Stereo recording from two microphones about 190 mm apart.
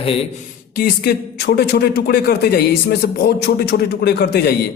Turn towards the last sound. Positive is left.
turn(degrees=55)  # may be behind; listen again after turning